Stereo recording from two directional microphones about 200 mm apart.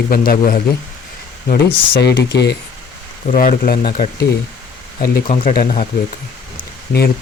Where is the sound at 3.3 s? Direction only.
45° left (ahead or behind).